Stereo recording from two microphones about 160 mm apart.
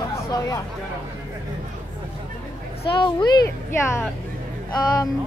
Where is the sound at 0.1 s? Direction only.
25° left (ahead or behind).